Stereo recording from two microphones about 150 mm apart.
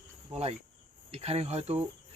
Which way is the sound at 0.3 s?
45° right (ahead or behind).